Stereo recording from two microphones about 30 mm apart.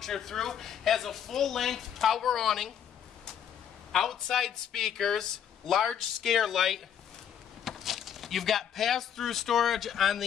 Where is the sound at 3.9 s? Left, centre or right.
Centre.